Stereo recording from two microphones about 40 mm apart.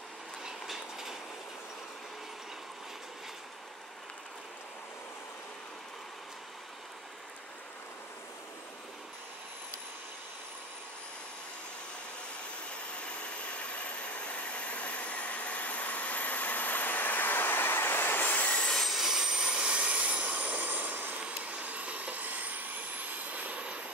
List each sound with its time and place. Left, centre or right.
0.5 s train: centre
13.2 s hair dryer: left
18.9 s jet engine: centre
19.8 s vehicle: right
21.3 s vehicle: right